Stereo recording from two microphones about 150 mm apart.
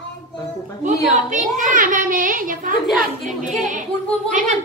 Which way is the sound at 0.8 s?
55° right (ahead or behind).